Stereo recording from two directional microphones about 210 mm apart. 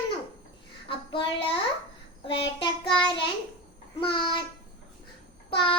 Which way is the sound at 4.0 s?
25° left (ahead or behind).